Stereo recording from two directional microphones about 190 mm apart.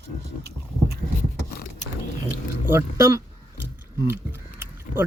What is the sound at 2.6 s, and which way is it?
Speech, 15° right (ahead or behind).